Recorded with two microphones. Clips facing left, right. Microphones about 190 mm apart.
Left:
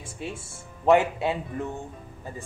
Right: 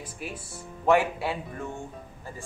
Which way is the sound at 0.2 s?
25° left (ahead or behind).